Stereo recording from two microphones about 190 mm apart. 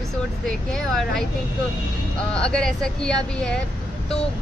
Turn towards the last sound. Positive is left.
turn(degrees=5)  # may be behind; listen again after turning